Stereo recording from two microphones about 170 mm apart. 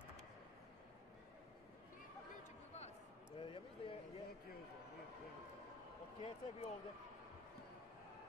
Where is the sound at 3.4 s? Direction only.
30° left (ahead or behind).